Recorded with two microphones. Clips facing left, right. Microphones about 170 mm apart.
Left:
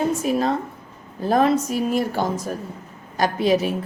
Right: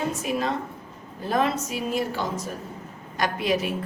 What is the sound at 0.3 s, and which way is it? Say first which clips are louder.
A woman's voice: left 5 dB; 40° left (ahead or behind).